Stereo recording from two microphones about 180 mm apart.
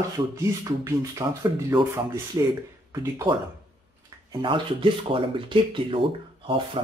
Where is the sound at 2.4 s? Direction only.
20° right (ahead or behind).